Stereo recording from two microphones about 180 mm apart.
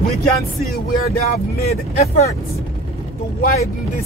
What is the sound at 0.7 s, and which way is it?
Speech, 60° left (ahead or behind).